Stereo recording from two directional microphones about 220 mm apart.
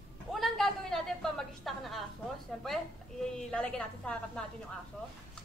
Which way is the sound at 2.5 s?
Centre (ahead or behind).